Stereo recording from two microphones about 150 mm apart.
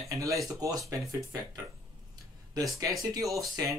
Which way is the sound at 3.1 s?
20° right (ahead or behind).